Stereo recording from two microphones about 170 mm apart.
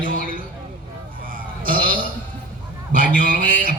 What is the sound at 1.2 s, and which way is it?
Burping, 55° right (ahead or behind).